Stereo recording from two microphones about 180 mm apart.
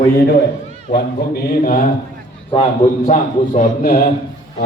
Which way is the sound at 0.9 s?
55° left (ahead or behind).